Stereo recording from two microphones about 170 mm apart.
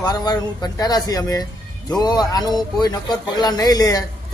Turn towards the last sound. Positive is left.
turn(degrees=20)  # may be behind; listen again after turning